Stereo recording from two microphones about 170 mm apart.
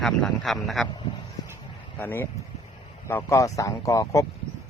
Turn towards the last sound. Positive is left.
turn(degrees=20)  # may be behind; listen again after turning